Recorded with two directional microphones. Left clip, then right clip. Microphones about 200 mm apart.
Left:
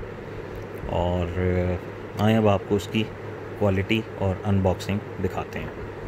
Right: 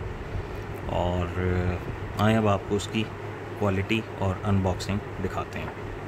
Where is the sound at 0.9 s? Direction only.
5° left (ahead or behind).